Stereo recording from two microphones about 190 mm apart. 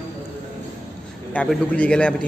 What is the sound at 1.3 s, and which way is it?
Speech, 5° left (ahead or behind).